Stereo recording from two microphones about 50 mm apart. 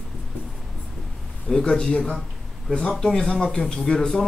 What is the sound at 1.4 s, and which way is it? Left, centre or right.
Speech, centre.